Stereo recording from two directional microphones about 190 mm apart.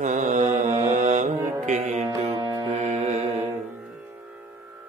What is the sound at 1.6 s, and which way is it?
Music, 40° right (ahead or behind).